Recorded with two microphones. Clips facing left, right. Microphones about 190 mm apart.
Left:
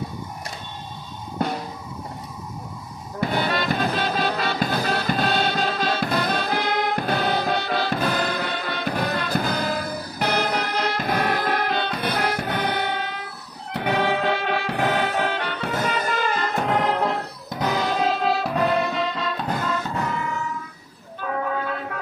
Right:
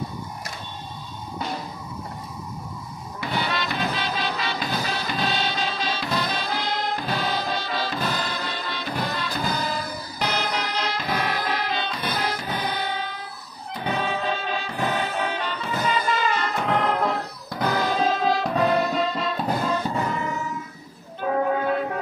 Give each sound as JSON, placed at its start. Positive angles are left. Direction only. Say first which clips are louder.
{"t": 3.2, "sound": "music", "louder": "left 4 dB", "side_deg": 50}
{"t": 17.5, "sound": "music", "louder": "even", "side_deg": 15}
{"t": 21.2, "sound": "music", "louder": "right 4 dB", "side_deg": -25}